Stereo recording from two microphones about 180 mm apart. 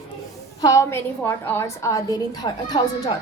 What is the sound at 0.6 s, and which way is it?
A woman's voice, 15° left (ahead or behind).